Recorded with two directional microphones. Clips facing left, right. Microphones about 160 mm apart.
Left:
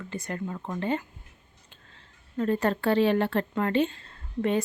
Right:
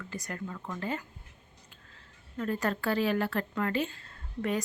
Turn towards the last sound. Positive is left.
turn(degrees=25)  # may be behind; listen again after turning